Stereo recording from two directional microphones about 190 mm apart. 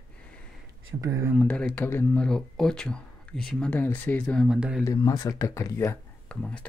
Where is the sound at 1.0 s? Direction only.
15° right (ahead or behind).